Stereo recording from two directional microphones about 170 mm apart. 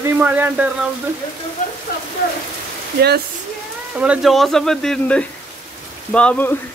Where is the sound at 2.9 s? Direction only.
70° right (ahead or behind).